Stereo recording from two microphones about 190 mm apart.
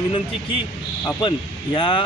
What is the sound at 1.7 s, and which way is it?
Speech, 25° left (ahead or behind).